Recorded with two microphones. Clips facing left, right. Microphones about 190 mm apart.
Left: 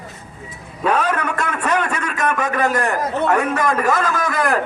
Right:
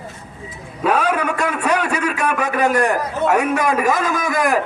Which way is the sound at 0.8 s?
10° right (ahead or behind).